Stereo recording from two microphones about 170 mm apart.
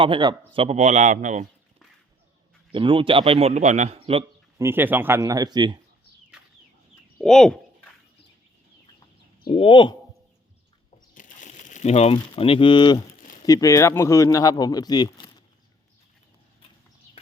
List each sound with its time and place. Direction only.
0.0 s a man's voice: 25° right (ahead or behind); by 1.5 s 45° right (ahead or behind)
2.7 s a man's voice: 30° right (ahead or behind)
4.5 s speech: 15° right (ahead or behind)
7.2 s bird: 5° left (ahead or behind)
9.5 s speech: 30° left (ahead or behind)
11.1 s a sound: 50° left (ahead or behind); by 13.0 s 25° left (ahead or behind)
13.4 s speech: 20° left (ahead or behind)